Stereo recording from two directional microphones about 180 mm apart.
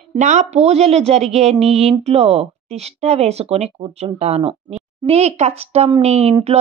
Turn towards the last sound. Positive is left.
turn(degrees=-35)  # may be behind; listen again after turning